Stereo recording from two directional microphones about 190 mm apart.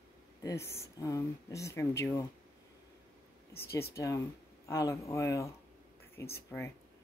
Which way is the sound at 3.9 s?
15° left (ahead or behind).